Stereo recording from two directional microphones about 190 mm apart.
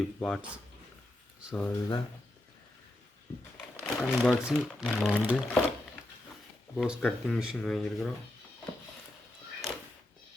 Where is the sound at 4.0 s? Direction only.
10° left (ahead or behind).